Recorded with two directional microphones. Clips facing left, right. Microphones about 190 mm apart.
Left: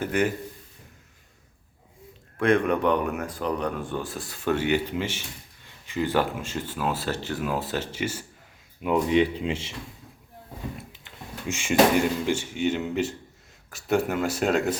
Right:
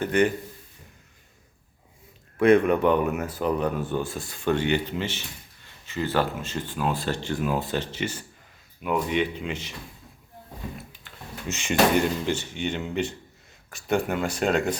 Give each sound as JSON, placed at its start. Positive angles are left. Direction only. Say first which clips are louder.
{"t": 0.0, "sound": "speech", "louder": "right 3 dB", "side_deg": 5}
{"t": 2.4, "sound": "speech", "louder": "right 3 dB", "side_deg": -5}
{"t": 8.8, "sound": "speech", "louder": "left 4 dB", "side_deg": 25}
{"t": 11.4, "sound": "speech", "louder": "left 2 dB", "side_deg": 10}